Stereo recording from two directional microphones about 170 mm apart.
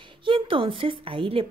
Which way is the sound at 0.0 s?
30° right (ahead or behind).